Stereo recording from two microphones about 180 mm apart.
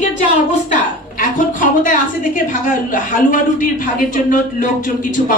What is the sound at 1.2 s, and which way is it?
A woman's voice, 45° left (ahead or behind).